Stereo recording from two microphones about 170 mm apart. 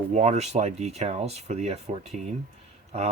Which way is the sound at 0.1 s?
40° right (ahead or behind).